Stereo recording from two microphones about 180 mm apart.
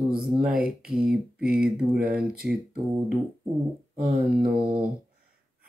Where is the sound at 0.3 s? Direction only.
5° right (ahead or behind).